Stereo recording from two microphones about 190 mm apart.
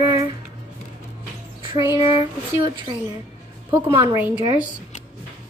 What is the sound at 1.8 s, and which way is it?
Child singing, 15° right (ahead or behind).